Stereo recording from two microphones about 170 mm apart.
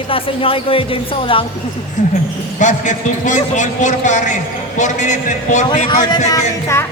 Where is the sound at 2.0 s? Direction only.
45° left (ahead or behind).